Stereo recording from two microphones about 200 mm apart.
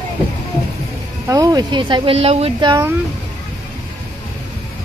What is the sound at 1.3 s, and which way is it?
Speech, 20° right (ahead or behind).